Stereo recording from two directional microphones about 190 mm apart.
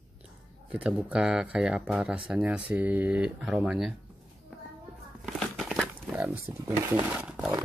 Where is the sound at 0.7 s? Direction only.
5° right (ahead or behind).